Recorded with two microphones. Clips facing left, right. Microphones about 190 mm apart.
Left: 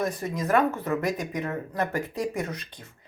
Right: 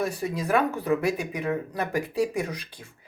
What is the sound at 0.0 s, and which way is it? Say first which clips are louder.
Speech: even; 10° right (ahead or behind).